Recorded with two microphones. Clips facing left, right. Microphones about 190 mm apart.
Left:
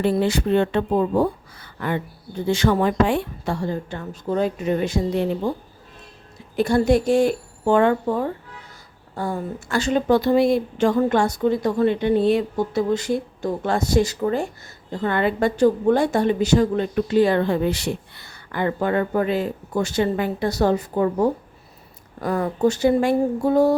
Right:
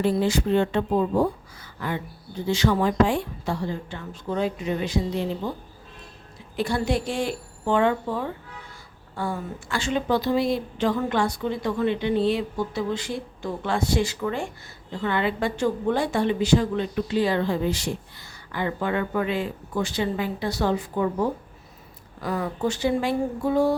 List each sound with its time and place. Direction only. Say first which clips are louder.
0.0 s a woman's voice: left 2 dB; 65° left (ahead or behind)
6.6 s a woman's voice: left 7 dB; 45° left (ahead or behind)